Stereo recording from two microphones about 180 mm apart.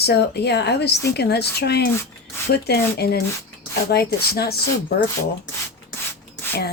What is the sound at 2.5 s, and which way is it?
Speech, 60° left (ahead or behind).